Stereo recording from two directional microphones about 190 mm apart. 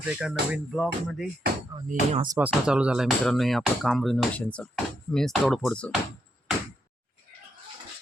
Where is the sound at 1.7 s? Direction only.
20° right (ahead or behind).